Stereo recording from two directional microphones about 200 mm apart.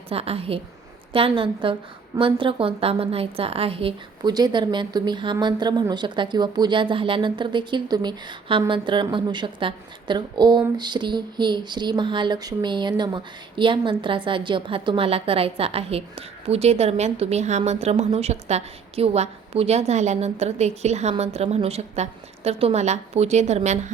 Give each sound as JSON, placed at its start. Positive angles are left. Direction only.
{"t": 0.1, "sound": "a woman's voice", "side_deg": -30}